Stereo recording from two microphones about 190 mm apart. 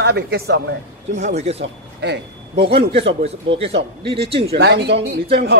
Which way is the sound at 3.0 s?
30° right (ahead or behind).